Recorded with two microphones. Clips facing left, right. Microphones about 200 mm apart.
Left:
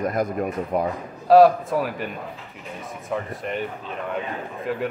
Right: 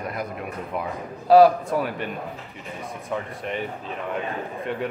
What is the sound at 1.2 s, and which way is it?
Speech, centre (ahead or behind).